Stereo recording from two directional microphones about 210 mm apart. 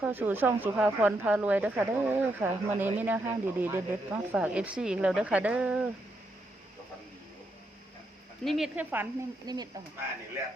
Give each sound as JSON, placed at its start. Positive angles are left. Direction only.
{"t": 0.0, "sound": "speech", "side_deg": -10}
{"t": 8.4, "sound": "speech", "side_deg": 0}